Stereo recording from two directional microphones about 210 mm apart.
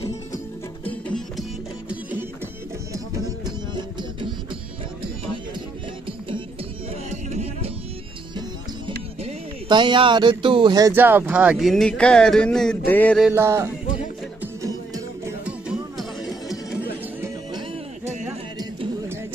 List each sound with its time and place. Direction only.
0.8 s music: 5° left (ahead or behind)
1.9 s music: 5° right (ahead or behind)
7.1 s music: 30° right (ahead or behind)
8.4 s speech: 20° right (ahead or behind); by 13.3 s 5° left (ahead or behind)
13.3 s music: 15° right (ahead or behind)
15.2 s music: 5° right (ahead or behind)